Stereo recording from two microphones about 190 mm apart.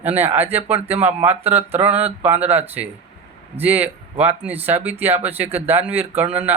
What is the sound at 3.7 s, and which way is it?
Speech, 30° right (ahead or behind).